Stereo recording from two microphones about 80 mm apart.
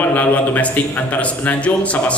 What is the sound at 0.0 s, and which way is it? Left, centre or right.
A man's voice, centre.